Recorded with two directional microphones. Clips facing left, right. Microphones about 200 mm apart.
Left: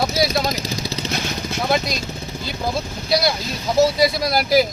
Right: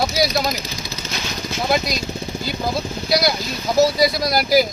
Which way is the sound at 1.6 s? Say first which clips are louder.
Right 1 dB; centre (ahead or behind).